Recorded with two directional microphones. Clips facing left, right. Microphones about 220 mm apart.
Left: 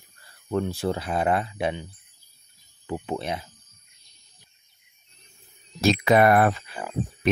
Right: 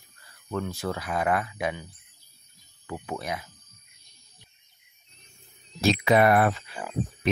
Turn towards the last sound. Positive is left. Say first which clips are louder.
# left 2 dB
turn(degrees=45)  # may be behind; listen again after turning